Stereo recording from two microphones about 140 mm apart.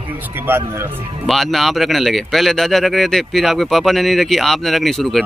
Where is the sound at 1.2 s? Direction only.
Centre (ahead or behind).